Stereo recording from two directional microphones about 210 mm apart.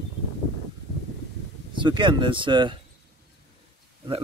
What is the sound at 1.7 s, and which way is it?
Speech, 20° right (ahead or behind).